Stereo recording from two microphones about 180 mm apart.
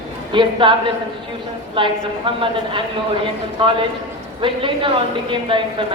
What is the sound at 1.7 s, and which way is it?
A woman's voice, 30° right (ahead or behind).